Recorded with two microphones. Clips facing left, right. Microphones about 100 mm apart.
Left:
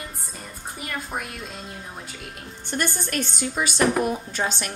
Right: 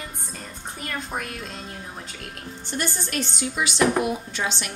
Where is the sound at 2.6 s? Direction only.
50° left (ahead or behind).